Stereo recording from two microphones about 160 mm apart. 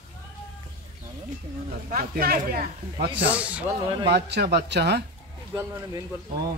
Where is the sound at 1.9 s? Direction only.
60° right (ahead or behind).